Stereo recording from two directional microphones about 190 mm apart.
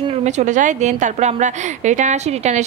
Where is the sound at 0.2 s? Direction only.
40° right (ahead or behind).